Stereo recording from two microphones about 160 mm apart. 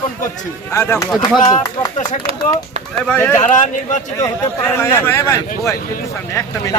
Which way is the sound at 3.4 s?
50° left (ahead or behind).